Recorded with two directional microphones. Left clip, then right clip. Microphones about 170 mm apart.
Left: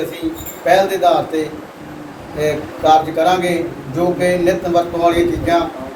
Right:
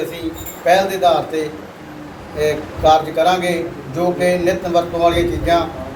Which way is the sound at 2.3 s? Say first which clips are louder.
Even; 5° right (ahead or behind).